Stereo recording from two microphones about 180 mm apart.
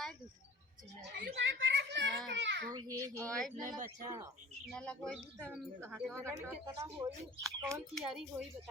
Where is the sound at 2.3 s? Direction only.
80° right.